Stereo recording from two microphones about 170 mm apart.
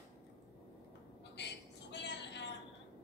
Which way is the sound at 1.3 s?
90° left.